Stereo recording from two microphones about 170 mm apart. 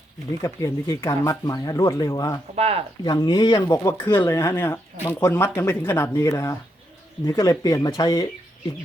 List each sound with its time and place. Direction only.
0.4 s speech: 20° left (ahead or behind)
2.6 s speech: 35° right (ahead or behind)
3.0 s speech: 25° left (ahead or behind)